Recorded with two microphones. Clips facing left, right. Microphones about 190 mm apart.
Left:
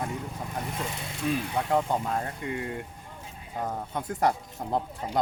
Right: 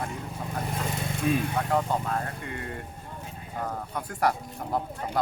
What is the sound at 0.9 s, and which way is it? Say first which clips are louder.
Vehicle: right 4 dB; 45° right (ahead or behind).